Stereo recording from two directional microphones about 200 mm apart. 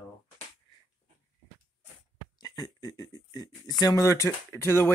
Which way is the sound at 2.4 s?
20° left (ahead or behind).